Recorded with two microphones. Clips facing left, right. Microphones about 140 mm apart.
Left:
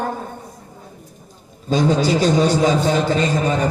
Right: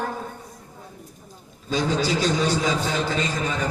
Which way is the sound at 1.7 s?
50° left (ahead or behind).